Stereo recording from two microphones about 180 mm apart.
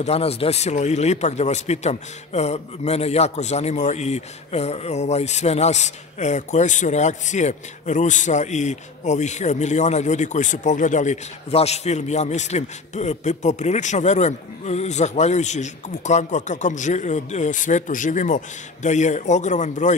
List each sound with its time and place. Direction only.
0.0 s speech: 35° left (ahead or behind)